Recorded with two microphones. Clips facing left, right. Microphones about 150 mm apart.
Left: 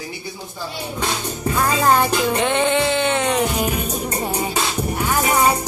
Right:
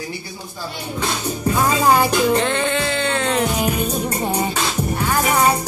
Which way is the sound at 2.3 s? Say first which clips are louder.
Left 1 dB; 15° left (ahead or behind).